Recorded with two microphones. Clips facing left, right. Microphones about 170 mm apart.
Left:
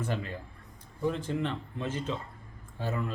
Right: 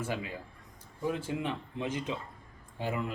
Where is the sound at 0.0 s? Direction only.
10° right (ahead or behind).